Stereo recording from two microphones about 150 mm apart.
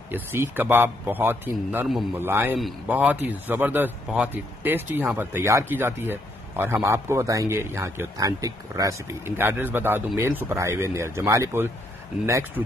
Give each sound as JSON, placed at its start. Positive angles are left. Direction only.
{"t": 0.1, "sound": "speech", "side_deg": -15}